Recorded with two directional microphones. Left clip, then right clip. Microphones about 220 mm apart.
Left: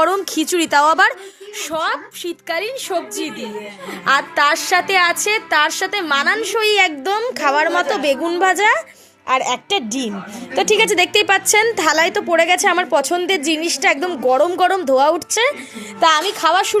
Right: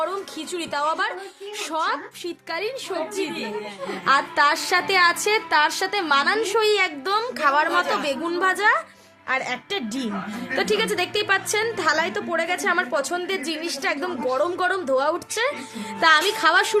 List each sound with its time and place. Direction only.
0.0 s a woman's voice: 40° left (ahead or behind)
1.7 s a woman's voice: 10° left (ahead or behind)
16.0 s speech: 5° left (ahead or behind)